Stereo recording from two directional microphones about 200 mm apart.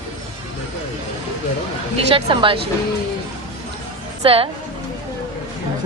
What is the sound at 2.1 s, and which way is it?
Speech, 25° right (ahead or behind).